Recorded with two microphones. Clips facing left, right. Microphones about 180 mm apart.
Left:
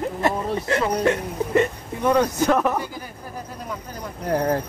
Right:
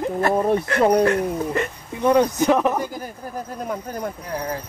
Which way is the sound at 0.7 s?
55° right (ahead or behind).